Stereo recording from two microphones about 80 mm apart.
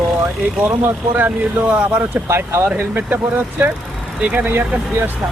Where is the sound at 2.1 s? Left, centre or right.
Right.